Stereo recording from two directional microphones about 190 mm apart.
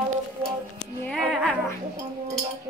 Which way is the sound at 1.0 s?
5° left (ahead or behind).